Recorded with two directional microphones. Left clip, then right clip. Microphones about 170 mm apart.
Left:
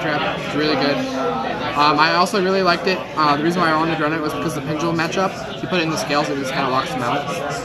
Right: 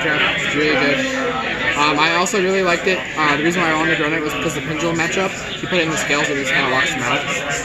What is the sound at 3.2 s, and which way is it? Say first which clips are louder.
Speech: left 1 dB; 25° left (ahead or behind).